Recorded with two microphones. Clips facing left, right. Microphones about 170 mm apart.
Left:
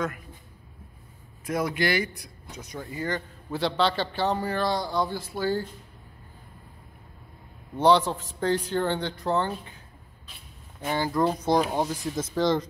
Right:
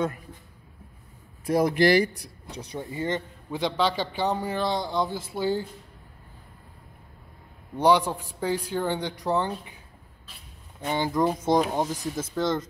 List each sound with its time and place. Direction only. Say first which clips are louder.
1.4 s speech: right 6 dB; 35° right (ahead or behind)
3.5 s a man's voice: even; 15° right (ahead or behind)
7.7 s a man's voice: even; 10° right (ahead or behind)
10.9 s a man's voice: even; 15° right (ahead or behind); by 12.6 s centre (ahead or behind)